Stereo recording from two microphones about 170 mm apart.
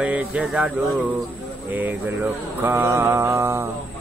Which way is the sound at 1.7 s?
10° right (ahead or behind).